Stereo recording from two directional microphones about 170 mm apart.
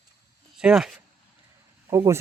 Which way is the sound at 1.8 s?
20° right (ahead or behind).